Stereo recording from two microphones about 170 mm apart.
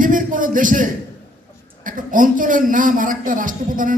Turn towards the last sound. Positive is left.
turn(degrees=-50)  # may be behind; listen again after turning